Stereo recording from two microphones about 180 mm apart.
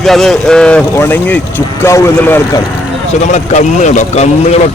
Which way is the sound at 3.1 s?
40° left (ahead or behind).